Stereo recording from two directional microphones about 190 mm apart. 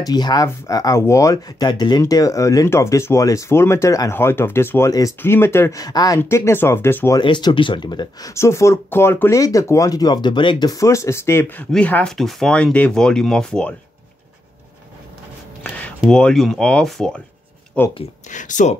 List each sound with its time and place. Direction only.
0.0 s speech: 20° left (ahead or behind)
7.2 s speech: 25° left (ahead or behind); by 13.7 s 5° left (ahead or behind)
15.6 s a sound: 10° left (ahead or behind)
16.0 s speech: 5° left (ahead or behind)
18.3 s speech: 40° left (ahead or behind)